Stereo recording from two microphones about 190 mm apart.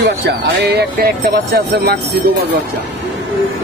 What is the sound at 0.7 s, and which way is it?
Speech, 50° right (ahead or behind).